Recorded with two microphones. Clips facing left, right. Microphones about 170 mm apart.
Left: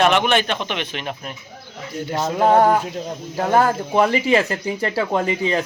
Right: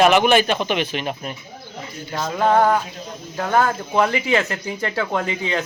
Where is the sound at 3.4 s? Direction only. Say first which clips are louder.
Left 2 dB; 35° left (ahead or behind).